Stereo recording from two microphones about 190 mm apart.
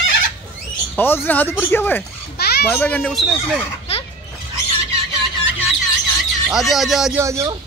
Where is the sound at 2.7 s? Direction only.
10° left (ahead or behind).